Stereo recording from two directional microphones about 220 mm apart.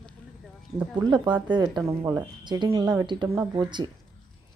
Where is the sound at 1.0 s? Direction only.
20° right (ahead or behind).